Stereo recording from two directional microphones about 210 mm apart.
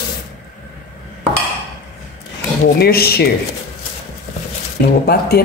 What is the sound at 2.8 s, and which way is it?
Speech, 50° left (ahead or behind).